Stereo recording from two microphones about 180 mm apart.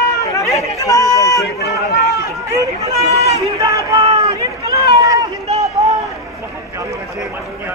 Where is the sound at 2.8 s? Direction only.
35° right (ahead or behind).